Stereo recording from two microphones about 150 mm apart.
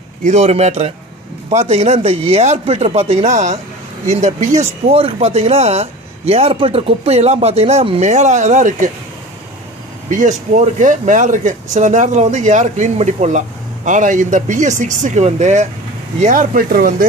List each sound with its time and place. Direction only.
0.2 s speech: 50° right (ahead or behind)
4.8 s speech: 40° right (ahead or behind)
10.0 s speech: 55° right (ahead or behind)